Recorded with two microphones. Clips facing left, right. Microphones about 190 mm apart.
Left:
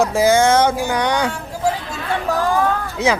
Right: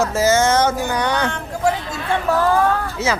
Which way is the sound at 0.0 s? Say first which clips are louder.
Left 2 dB; 15° left (ahead or behind).